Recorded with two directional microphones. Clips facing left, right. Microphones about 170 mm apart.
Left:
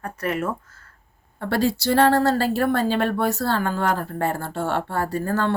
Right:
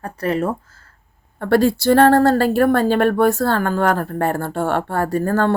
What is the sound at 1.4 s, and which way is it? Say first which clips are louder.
Speech: right 7 dB; 55° right (ahead or behind).